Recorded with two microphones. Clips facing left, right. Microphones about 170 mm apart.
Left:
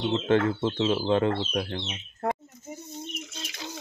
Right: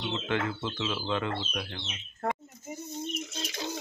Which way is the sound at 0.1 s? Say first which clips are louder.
Left 8 dB; 35° left (ahead or behind).